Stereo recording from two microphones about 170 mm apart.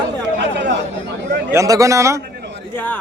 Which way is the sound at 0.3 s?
90° right.